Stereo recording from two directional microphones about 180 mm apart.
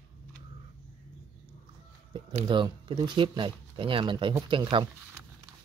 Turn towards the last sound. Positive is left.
turn(degrees=-25)  # may be behind; listen again after turning